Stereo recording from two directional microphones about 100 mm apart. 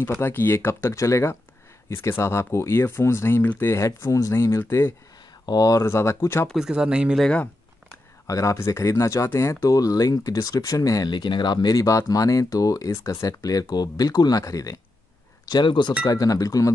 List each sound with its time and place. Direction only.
0.0 s speech: 20° left (ahead or behind)
6.5 s speech: 5° right (ahead or behind)
7.2 s speech: 10° left (ahead or behind)
8.3 s speech: 30° left (ahead or behind)
15.4 s speech: 50° left (ahead or behind)
16.1 s speech: 35° left (ahead or behind)